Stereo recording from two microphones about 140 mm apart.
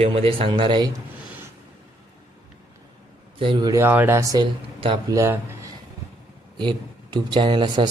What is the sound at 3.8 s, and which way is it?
Speech, 15° right (ahead or behind).